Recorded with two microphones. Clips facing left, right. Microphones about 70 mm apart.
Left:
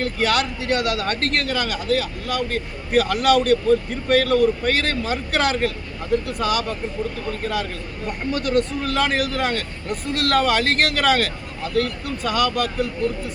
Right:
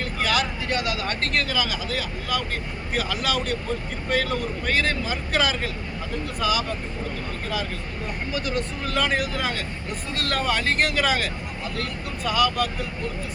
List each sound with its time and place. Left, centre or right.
0.0 s speech: left
8.3 s speech: left